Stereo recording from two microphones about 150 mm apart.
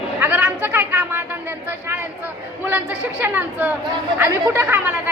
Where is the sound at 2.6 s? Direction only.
10° right (ahead or behind).